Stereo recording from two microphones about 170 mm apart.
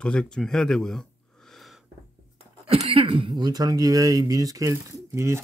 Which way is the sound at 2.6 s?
35° right (ahead or behind).